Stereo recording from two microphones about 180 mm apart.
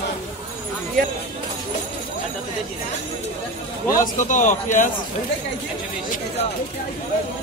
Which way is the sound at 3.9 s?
45° left (ahead or behind).